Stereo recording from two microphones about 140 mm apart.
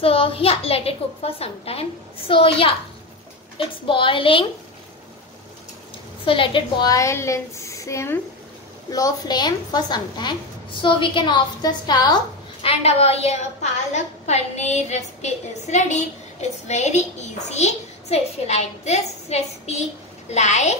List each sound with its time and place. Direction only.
0.0 s a woman's voice: 45° left (ahead or behind)
6.2 s a woman's voice: 40° left (ahead or behind)
6.9 s a woman's voice: 20° left (ahead or behind)
12.6 s a woman's voice: 45° left (ahead or behind)